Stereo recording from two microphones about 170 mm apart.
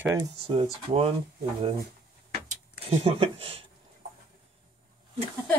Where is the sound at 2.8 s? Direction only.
35° right (ahead or behind).